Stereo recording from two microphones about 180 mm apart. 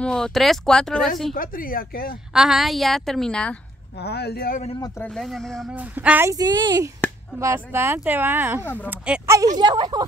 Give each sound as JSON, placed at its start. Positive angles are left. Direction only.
{"t": 0.0, "sound": "a woman's voice", "side_deg": 5}
{"t": 1.3, "sound": "speech", "side_deg": 50}
{"t": 2.3, "sound": "a woman's voice", "side_deg": 0}
{"t": 4.0, "sound": "speech", "side_deg": 65}
{"t": 4.7, "sound": "speech", "side_deg": 20}
{"t": 5.0, "sound": "speech", "side_deg": 0}
{"t": 8.6, "sound": "speech", "side_deg": 10}
{"t": 8.9, "sound": "speech", "side_deg": -5}
{"t": 9.6, "sound": "speech", "side_deg": -25}